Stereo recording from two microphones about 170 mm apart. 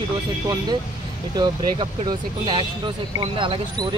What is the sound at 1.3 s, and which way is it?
Speech, 25° right (ahead or behind).